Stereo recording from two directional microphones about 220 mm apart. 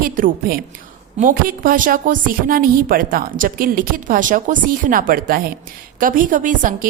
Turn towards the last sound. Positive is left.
turn(degrees=-35)  # may be behind; listen again after turning